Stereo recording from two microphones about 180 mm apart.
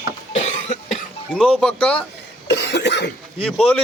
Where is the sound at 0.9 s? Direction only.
Centre (ahead or behind).